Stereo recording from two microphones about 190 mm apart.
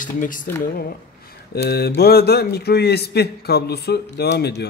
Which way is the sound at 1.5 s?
55° left (ahead or behind).